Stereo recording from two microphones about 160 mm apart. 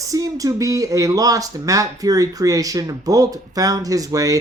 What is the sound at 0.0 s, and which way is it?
Speech, 20° right (ahead or behind).